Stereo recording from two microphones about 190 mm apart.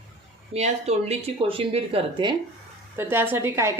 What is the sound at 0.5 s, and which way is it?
Speech, 35° right (ahead or behind).